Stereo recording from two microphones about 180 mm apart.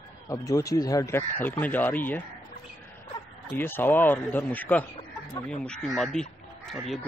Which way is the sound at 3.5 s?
10° left (ahead or behind).